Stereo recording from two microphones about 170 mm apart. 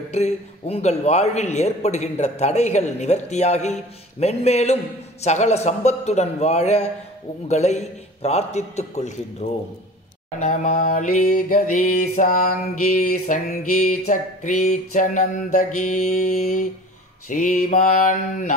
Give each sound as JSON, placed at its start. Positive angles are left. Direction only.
{"t": 0.1, "sound": "a man's voice", "side_deg": 40}
{"t": 10.4, "sound": "mantra", "side_deg": 50}